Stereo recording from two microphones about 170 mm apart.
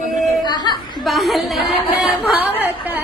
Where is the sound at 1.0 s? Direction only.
Centre (ahead or behind).